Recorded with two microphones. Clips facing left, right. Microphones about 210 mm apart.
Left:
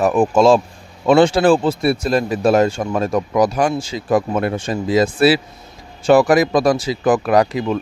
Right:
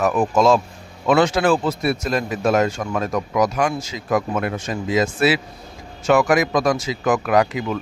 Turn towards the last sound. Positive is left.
turn(degrees=35)  # may be behind; listen again after turning